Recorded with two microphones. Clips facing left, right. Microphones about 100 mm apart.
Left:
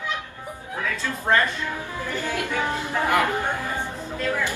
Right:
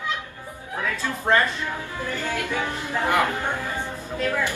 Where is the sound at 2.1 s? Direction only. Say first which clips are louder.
Even; 15° left (ahead or behind).